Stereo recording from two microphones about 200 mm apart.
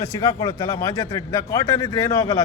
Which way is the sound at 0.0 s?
20° left (ahead or behind).